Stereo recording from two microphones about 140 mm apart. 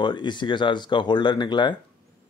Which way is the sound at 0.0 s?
35° left (ahead or behind).